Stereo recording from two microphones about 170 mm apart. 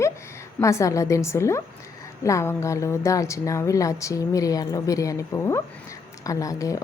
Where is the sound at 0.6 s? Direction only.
20° left (ahead or behind).